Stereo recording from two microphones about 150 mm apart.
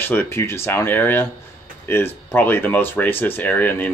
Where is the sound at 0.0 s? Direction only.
15° left (ahead or behind).